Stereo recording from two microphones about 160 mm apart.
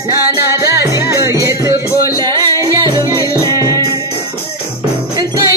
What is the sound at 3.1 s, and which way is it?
Music, 20° left (ahead or behind).